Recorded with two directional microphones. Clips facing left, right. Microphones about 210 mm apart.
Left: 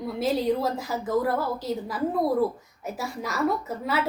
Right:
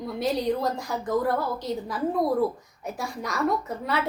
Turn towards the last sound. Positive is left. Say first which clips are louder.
# even
turn(degrees=5)  # may be behind; listen again after turning